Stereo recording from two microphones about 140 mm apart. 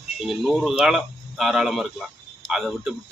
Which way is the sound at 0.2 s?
Centre (ahead or behind).